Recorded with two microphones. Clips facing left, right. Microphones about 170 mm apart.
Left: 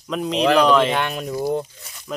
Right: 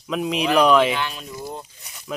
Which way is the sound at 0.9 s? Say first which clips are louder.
Left 4 dB; 55° left (ahead or behind).